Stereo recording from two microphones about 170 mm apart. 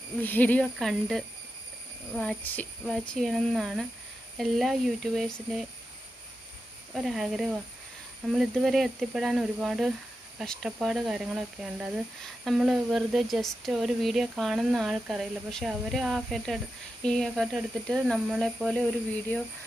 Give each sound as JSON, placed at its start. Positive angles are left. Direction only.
{"t": 0.2, "sound": "speech", "side_deg": 10}
{"t": 6.9, "sound": "speech", "side_deg": 0}